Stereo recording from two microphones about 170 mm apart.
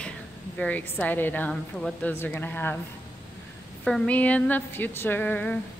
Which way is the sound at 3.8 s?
5° left (ahead or behind).